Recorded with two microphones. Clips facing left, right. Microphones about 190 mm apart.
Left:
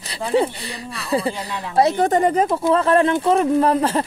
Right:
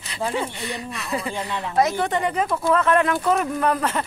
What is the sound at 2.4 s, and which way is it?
Speech, 25° left (ahead or behind).